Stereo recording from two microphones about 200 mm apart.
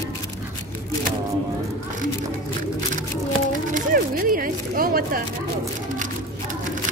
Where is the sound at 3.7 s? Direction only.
45° right (ahead or behind).